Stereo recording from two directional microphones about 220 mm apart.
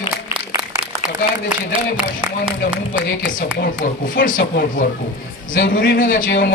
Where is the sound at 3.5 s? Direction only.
40° left (ahead or behind).